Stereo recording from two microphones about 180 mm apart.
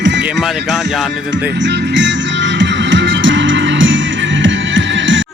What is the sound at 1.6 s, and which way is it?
Music, 80° right.